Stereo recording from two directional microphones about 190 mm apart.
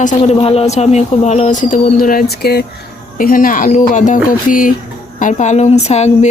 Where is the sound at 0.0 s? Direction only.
40° left (ahead or behind).